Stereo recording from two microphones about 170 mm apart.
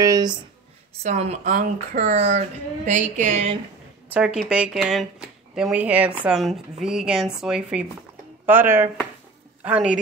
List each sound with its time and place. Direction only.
0.0 s speech: 20° right (ahead or behind)
1.0 s speech: 40° right (ahead or behind)
4.1 s a woman's voice: 5° right (ahead or behind)